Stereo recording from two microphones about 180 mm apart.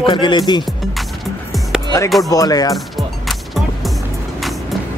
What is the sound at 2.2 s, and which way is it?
Speech, 20° left (ahead or behind).